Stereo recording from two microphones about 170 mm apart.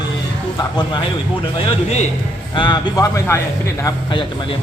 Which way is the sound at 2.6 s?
25° left (ahead or behind).